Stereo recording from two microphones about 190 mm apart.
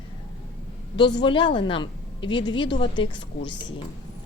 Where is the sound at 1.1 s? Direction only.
25° left (ahead or behind).